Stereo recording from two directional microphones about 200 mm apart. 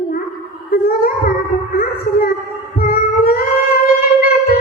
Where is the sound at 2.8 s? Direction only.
50° left (ahead or behind).